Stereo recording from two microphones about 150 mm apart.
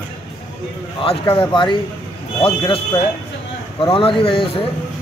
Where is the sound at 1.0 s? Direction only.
35° left (ahead or behind).